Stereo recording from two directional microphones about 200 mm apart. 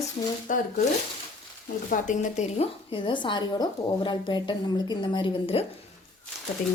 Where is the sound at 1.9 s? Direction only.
40° left (ahead or behind).